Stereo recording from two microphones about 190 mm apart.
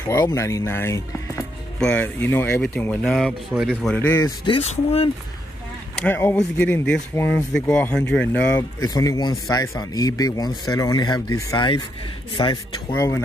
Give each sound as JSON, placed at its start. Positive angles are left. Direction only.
{"t": 0.0, "sound": "speech", "side_deg": 20}
{"t": 4.5, "sound": "speech", "side_deg": 30}
{"t": 5.9, "sound": "speech", "side_deg": 10}
{"t": 12.9, "sound": "speech", "side_deg": 15}